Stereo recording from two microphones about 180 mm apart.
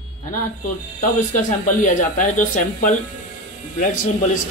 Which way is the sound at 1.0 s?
45° left (ahead or behind).